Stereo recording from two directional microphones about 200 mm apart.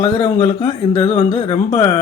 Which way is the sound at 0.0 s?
30° left (ahead or behind).